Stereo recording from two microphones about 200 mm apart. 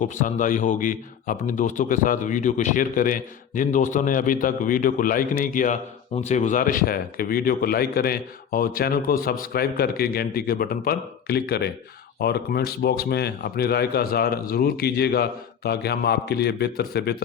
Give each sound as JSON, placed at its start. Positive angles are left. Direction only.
{"t": 0.0, "sound": "a man's voice", "side_deg": 40}